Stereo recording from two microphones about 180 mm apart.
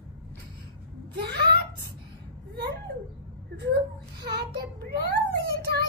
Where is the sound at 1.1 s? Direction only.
65° right (ahead or behind).